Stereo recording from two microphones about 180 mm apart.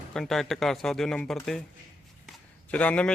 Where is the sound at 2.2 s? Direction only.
5° left (ahead or behind).